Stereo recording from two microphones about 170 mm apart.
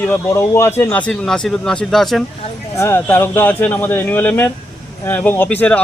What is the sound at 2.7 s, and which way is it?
Speech, 15° left (ahead or behind).